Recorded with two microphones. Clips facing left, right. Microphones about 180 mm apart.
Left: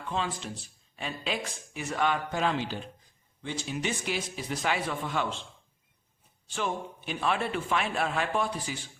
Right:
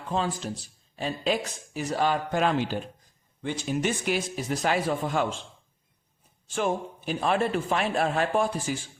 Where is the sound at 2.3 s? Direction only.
55° right (ahead or behind).